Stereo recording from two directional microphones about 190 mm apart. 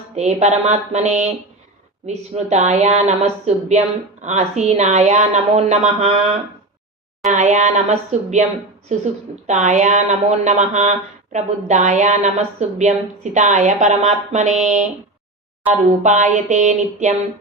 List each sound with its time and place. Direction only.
0.2 s speech: 35° right (ahead or behind)
16.0 s speech: 40° right (ahead or behind)